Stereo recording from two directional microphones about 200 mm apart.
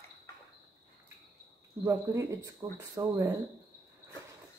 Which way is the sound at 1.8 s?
15° right (ahead or behind).